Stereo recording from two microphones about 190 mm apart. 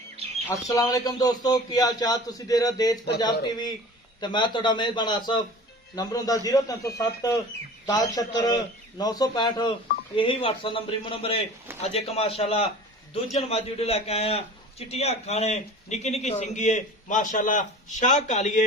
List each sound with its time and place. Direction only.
0.4 s a man's voice: 20° left (ahead or behind); by 18.6 s 40° left (ahead or behind)